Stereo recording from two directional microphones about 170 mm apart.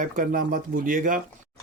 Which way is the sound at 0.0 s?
55° right (ahead or behind).